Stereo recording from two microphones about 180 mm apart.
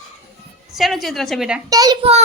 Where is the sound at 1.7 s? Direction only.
20° right (ahead or behind).